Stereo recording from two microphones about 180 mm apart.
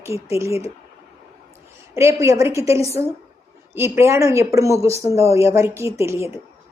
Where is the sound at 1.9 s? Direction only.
15° right (ahead or behind).